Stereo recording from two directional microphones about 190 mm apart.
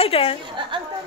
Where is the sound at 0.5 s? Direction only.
25° right (ahead or behind).